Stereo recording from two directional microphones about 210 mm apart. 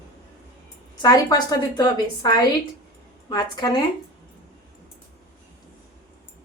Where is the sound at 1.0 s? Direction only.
20° left (ahead or behind).